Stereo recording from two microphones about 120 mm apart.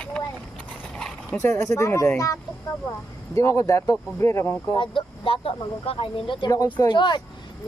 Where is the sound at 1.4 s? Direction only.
25° left (ahead or behind).